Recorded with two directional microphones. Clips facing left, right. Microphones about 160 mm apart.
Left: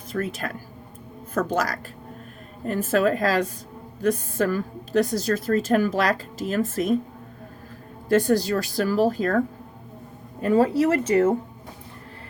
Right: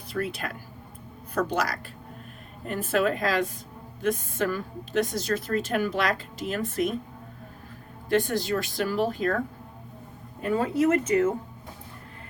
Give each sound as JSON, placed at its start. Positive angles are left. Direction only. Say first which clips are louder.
{"t": 0.1, "sound": "a woman's voice", "louder": "left 3 dB", "side_deg": 45}
{"t": 8.1, "sound": "a woman's voice", "louder": "left 5 dB", "side_deg": 40}
{"t": 10.4, "sound": "a woman's voice", "louder": "left 4 dB", "side_deg": 40}